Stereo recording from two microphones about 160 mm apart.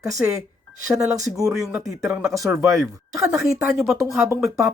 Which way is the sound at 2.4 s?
20° right (ahead or behind).